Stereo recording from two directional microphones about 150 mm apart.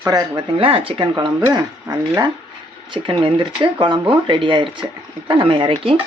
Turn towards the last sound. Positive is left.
turn(degrees=-35)  # may be behind; listen again after turning